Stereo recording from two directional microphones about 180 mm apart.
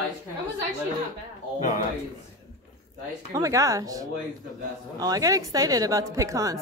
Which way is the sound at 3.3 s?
20° right (ahead or behind).